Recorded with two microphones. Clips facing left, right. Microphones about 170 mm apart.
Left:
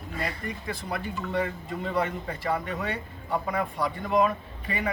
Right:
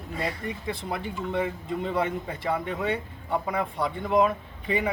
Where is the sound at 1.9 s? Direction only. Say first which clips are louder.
Left 1 dB; 10° right (ahead or behind).